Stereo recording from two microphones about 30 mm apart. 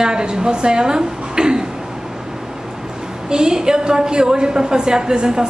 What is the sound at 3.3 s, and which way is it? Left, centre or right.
A woman's voice, right.